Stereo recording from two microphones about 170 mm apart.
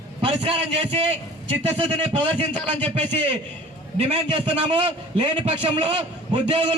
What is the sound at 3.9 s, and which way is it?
A man's voice, 35° right (ahead or behind).